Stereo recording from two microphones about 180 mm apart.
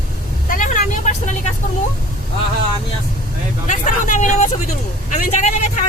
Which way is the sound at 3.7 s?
45° left (ahead or behind).